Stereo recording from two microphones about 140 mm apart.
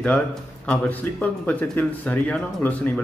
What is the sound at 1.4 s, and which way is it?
Speech, 10° left (ahead or behind).